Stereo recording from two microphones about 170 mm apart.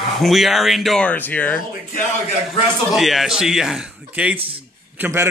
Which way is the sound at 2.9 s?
Centre (ahead or behind).